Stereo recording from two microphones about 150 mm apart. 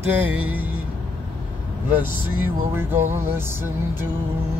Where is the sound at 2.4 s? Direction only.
15° right (ahead or behind).